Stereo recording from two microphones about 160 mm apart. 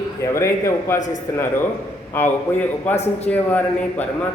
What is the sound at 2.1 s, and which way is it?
Speech, 10° left (ahead or behind).